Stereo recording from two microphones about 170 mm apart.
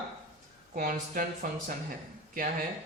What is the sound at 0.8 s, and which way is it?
Speech, 55° right (ahead or behind).